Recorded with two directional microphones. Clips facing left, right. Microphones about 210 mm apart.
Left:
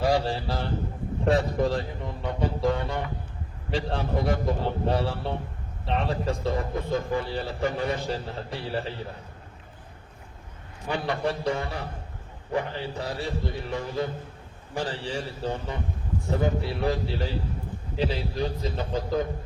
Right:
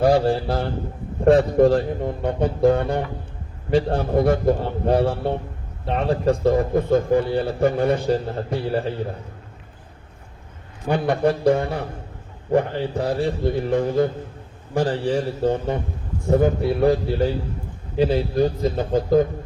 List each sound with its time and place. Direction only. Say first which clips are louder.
0.0 s a man's voice: right 7 dB; 55° right (ahead or behind)
10.8 s a man's voice: right 8 dB; 50° right (ahead or behind)